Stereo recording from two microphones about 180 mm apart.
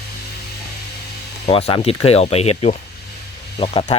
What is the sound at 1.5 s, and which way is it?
Speech, 35° left (ahead or behind).